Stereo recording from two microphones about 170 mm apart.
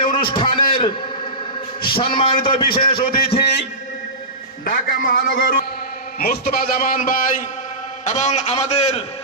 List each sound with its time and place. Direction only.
0.0 s a sound: 30° left (ahead or behind)
2.0 s a man's voice: 30° left (ahead or behind)
3.4 s a man's voice: 90° left
4.6 s a man's voice: 55° left (ahead or behind); by 9.0 s 40° left (ahead or behind)